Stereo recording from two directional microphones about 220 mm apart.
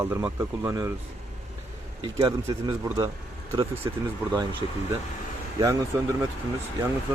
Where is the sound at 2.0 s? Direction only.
20° right (ahead or behind).